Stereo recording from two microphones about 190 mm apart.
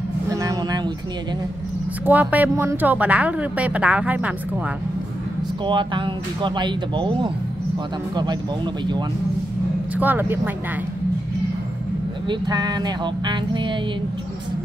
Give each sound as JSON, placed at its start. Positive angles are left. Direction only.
{"t": 0.3, "sound": "vehicle", "side_deg": -15}
{"t": 2.0, "sound": "a woman's voice", "side_deg": -10}
{"t": 5.7, "sound": "speech", "side_deg": -25}
{"t": 9.9, "sound": "a woman's voice", "side_deg": -10}
{"t": 12.3, "sound": "speech", "side_deg": -20}